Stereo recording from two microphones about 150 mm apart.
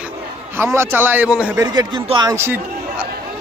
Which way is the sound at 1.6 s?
25° right (ahead or behind).